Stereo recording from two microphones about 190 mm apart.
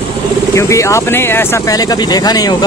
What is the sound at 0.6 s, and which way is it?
Speech, 15° left (ahead or behind).